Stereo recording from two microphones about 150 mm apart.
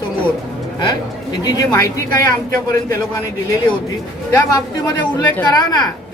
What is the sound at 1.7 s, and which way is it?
Speech, 20° left (ahead or behind).